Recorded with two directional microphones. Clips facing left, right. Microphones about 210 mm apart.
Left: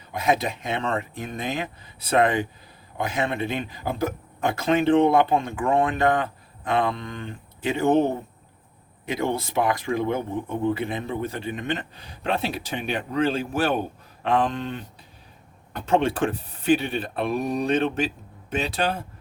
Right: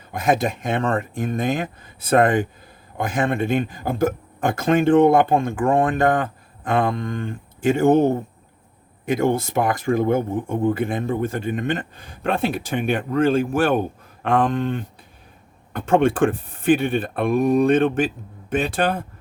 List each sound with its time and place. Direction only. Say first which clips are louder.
0.1 s speech: right 3 dB; 50° right (ahead or behind)